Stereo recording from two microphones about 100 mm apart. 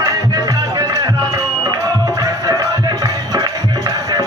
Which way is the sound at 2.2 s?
40° right (ahead or behind).